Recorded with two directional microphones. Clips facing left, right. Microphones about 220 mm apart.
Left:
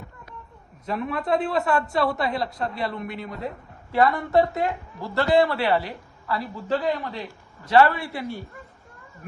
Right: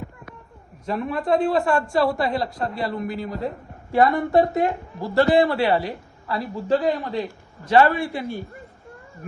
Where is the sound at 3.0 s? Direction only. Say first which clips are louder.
Right 5 dB; centre (ahead or behind).